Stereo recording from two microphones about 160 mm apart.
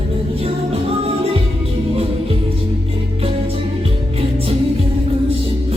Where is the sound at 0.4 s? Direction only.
40° right (ahead or behind).